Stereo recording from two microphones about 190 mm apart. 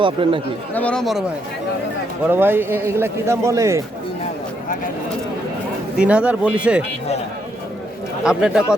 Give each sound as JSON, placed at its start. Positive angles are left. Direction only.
{"t": 0.0, "sound": "speech", "side_deg": -25}
{"t": 0.7, "sound": "speech", "side_deg": 5}
{"t": 2.3, "sound": "a man's voice", "side_deg": -10}
{"t": 6.0, "sound": "a man's voice", "side_deg": -5}
{"t": 8.2, "sound": "speech", "side_deg": -5}